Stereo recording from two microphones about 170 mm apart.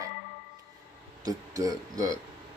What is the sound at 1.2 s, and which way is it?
Speech, 20° right (ahead or behind).